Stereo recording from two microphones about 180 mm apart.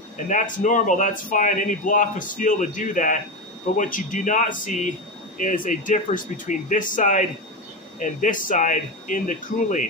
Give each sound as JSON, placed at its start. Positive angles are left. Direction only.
{"t": 0.3, "sound": "speech", "side_deg": 45}